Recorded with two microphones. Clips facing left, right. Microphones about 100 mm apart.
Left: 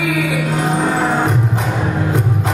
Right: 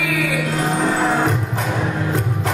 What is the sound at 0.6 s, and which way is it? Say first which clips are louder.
Music: left 1 dB; 15° left (ahead or behind).